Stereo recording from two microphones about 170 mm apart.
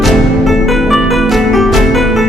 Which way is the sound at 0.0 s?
Centre (ahead or behind).